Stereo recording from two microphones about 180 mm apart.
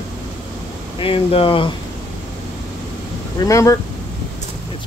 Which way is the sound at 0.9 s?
30° left (ahead or behind).